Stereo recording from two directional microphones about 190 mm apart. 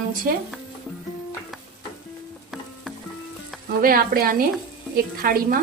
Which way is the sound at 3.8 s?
50° right (ahead or behind).